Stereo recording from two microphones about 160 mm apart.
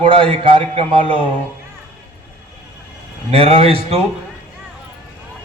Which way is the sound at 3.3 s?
35° right (ahead or behind).